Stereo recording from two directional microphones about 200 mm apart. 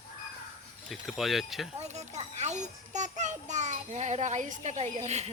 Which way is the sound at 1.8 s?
35° right (ahead or behind).